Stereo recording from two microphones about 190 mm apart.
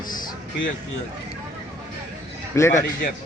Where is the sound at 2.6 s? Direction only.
15° left (ahead or behind).